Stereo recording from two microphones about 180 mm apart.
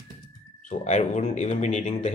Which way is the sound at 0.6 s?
45° left (ahead or behind).